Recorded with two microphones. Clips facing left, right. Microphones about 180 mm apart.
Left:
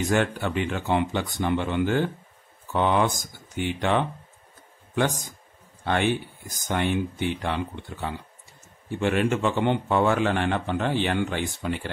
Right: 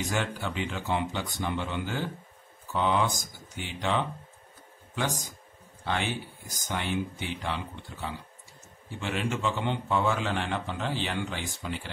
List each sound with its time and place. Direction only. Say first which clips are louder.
0.1 s a man's voice: left 7 dB; 60° left (ahead or behind)
5.9 s a man's voice: left 7 dB; 55° left (ahead or behind)